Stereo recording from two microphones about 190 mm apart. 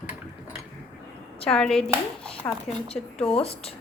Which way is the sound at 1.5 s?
5° left (ahead or behind).